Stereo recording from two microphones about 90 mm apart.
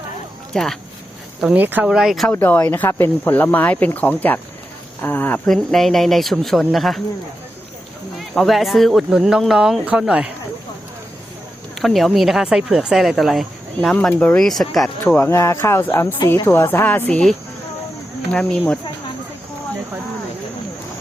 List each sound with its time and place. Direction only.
0.5 s speech: 5° left (ahead or behind)
1.5 s speech: 20° right (ahead or behind)
1.9 s speech: 5° right (ahead or behind)
2.3 s speech: 25° left (ahead or behind)
5.5 s speech: 5° left (ahead or behind)
8.4 s speech: centre (ahead or behind)
11.7 s speech: centre (ahead or behind)
14.1 s speech: 20° left (ahead or behind)
14.3 s speech: 5° left (ahead or behind)
15.1 s speech: 25° left (ahead or behind)
18.3 s speech: 10° left (ahead or behind)